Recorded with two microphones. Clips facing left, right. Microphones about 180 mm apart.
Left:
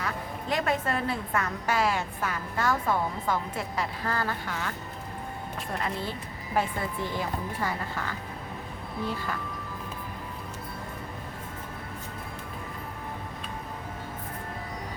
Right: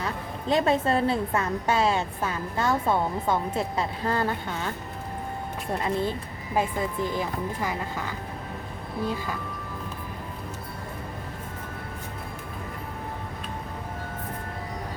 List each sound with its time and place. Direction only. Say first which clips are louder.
0.0 s a woman's voice: right 2 dB; 25° right (ahead or behind)
5.8 s speech: right 8 dB; 20° right (ahead or behind)